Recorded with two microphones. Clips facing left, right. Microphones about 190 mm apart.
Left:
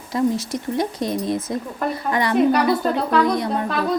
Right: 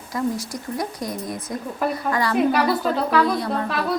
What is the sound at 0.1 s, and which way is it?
Speech, 25° left (ahead or behind).